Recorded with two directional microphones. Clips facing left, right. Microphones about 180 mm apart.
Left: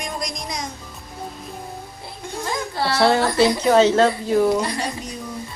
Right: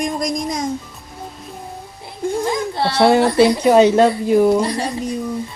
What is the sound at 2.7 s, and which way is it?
A woman's voice, 25° right (ahead or behind).